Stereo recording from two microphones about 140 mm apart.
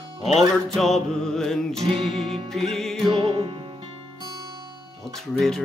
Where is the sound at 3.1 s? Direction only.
35° right (ahead or behind).